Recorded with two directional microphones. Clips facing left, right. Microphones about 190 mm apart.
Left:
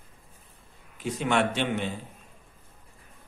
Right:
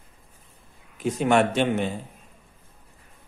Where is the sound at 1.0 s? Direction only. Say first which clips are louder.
Right 5 dB; 45° right (ahead or behind).